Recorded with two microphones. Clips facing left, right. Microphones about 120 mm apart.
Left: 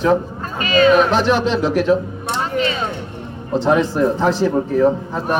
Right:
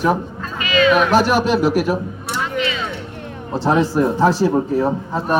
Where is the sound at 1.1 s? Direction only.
10° right (ahead or behind).